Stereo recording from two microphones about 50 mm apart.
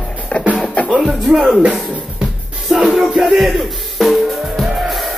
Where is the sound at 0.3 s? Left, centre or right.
Left.